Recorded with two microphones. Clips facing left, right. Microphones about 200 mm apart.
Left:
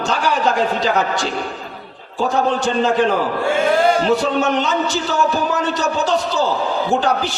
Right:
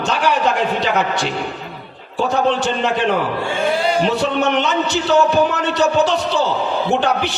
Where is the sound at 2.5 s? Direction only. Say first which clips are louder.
Left 3 dB; 65° right (ahead or behind).